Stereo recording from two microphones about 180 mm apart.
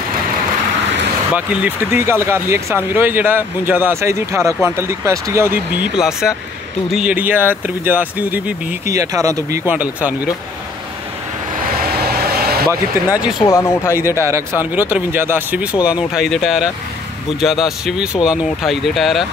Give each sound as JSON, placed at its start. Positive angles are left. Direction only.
{"t": 1.3, "sound": "speech", "side_deg": -5}
{"t": 12.0, "sound": "vehicle", "side_deg": -60}
{"t": 13.1, "sound": "speech", "side_deg": -5}
{"t": 13.4, "sound": "speech", "side_deg": 15}
{"t": 14.6, "sound": "speech", "side_deg": -10}